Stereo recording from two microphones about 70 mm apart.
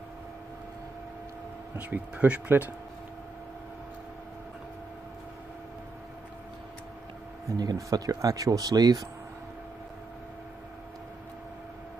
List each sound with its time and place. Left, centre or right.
1.8 s speech: right
7.4 s speech: right